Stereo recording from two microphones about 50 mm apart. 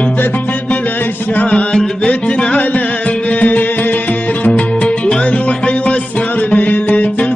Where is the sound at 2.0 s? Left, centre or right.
Left.